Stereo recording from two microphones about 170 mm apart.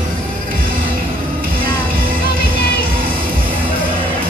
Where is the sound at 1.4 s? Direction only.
60° right (ahead or behind).